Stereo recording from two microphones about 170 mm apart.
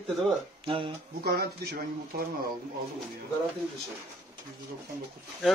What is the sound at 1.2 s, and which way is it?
Speech, 65° right (ahead or behind).